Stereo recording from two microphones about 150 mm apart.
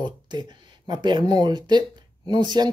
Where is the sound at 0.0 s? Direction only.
30° right (ahead or behind).